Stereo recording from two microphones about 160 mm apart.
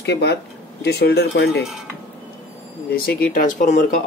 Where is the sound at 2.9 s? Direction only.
70° left (ahead or behind).